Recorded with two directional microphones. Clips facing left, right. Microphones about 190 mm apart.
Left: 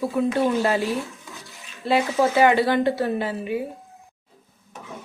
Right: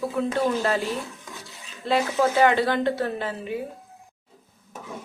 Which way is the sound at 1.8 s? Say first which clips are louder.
Left 2 dB; 10° left (ahead or behind).